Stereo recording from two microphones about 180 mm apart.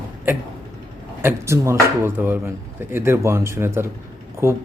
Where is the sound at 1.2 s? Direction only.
15° right (ahead or behind).